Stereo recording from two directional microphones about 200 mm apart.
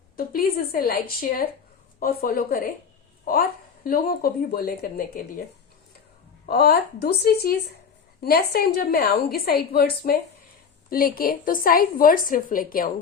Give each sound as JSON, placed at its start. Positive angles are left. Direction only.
{"t": 0.2, "sound": "a woman's voice", "side_deg": 45}
{"t": 2.0, "sound": "a woman's voice", "side_deg": 45}
{"t": 6.4, "sound": "a woman's voice", "side_deg": 50}